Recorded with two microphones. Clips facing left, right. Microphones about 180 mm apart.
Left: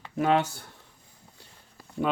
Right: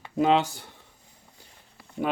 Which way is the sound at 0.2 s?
20° right (ahead or behind).